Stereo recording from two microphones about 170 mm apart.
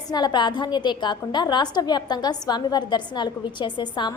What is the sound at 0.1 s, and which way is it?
A woman's voice, 25° left (ahead or behind).